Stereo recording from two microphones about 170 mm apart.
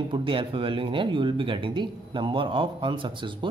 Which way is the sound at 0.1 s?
30° right (ahead or behind).